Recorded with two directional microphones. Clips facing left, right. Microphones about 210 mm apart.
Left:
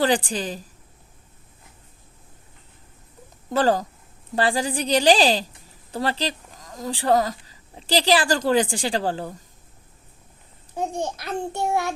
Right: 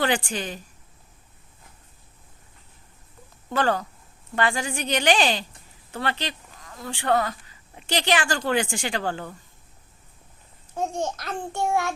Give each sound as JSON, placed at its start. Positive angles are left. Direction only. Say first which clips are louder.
{"t": 0.3, "sound": "speech", "louder": "left 3 dB", "side_deg": 35}
{"t": 3.5, "sound": "speech", "louder": "left 4 dB", "side_deg": 35}
{"t": 10.8, "sound": "a child's voice", "louder": "even", "side_deg": 15}
{"t": 11.6, "sound": "child singing", "louder": "right 1 dB", "side_deg": 20}